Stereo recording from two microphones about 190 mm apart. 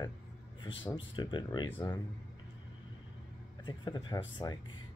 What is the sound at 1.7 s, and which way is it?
Speech, 10° left (ahead or behind).